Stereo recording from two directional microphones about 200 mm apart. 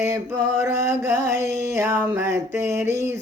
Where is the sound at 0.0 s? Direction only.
15° right (ahead or behind).